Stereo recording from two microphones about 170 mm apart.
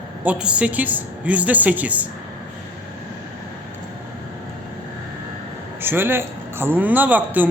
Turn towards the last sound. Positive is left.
turn(degrees=-10)  # may be behind; listen again after turning